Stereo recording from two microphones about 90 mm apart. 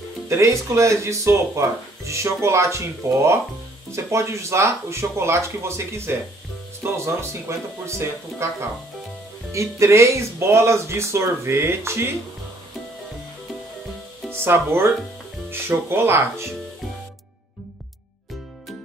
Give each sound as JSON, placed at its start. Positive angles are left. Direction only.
{"t": 0.3, "sound": "speech", "side_deg": -35}
{"t": 14.4, "sound": "speech", "side_deg": -25}